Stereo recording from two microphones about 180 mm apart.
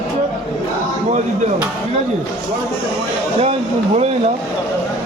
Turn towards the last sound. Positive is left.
turn(degrees=-35)  # may be behind; listen again after turning